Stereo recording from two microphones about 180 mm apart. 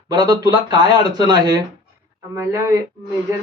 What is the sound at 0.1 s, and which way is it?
Speech, 25° right (ahead or behind).